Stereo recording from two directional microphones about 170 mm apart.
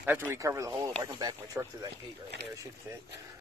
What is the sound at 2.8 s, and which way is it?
Speech, 15° right (ahead or behind).